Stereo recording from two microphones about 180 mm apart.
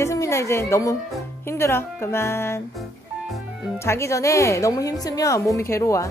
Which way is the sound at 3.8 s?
15° left (ahead or behind).